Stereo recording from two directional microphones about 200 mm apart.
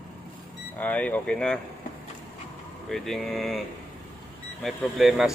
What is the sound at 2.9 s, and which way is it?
Speech, centre (ahead or behind).